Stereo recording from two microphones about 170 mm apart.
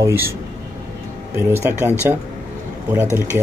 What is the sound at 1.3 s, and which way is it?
Speech, 15° right (ahead or behind).